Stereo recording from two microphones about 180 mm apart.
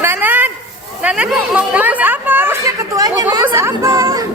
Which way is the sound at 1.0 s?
5° right (ahead or behind).